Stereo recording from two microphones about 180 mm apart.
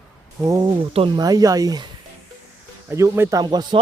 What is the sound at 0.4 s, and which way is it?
Speech, 20° right (ahead or behind).